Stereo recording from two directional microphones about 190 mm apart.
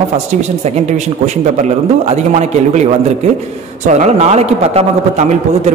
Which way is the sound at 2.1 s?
35° right (ahead or behind).